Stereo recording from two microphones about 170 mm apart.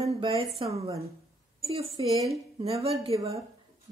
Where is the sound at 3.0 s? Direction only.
35° right (ahead or behind).